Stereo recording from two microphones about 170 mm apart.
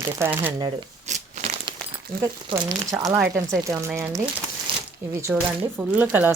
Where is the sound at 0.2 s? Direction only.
15° right (ahead or behind).